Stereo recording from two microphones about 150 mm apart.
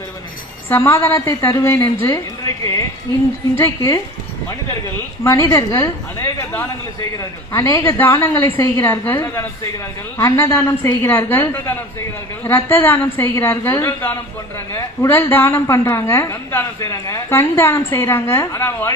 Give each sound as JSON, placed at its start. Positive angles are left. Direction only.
{"t": 0.7, "sound": "a woman's voice", "side_deg": 15}
{"t": 3.5, "sound": "speech", "side_deg": 20}
{"t": 5.2, "sound": "a woman's voice", "side_deg": 20}